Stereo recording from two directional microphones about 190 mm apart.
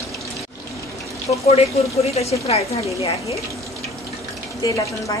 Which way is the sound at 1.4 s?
35° left (ahead or behind).